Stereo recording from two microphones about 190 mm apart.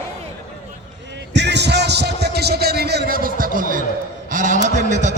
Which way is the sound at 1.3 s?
65° right (ahead or behind).